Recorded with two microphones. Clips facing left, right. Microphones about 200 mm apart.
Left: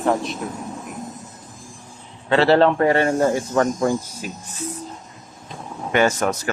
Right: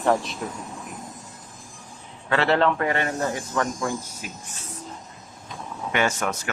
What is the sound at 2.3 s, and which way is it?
Speech, 30° left (ahead or behind).